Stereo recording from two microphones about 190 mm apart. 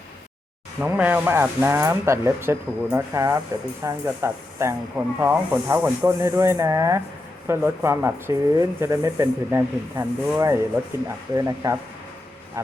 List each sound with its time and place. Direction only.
0.8 s speech: 10° right (ahead or behind)